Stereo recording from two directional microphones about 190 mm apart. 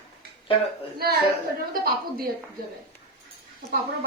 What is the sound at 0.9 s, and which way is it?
A woman's voice, 55° right (ahead or behind).